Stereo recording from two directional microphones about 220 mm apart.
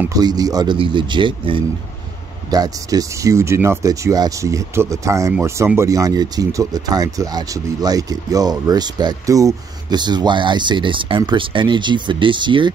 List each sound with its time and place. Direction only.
0.0 s speech: 15° right (ahead or behind)